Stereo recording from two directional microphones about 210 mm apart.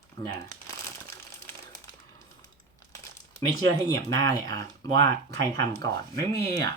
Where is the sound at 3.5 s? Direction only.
15° left (ahead or behind).